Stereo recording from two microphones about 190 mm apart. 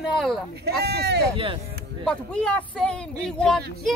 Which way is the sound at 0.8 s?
60° right (ahead or behind).